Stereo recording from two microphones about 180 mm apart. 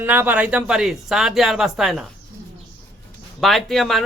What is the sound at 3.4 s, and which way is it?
Speech, centre (ahead or behind).